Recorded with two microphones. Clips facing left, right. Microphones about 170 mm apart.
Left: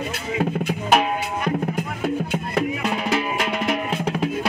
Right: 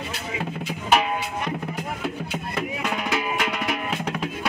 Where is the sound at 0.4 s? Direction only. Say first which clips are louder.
Left 10 dB; 50° left (ahead or behind).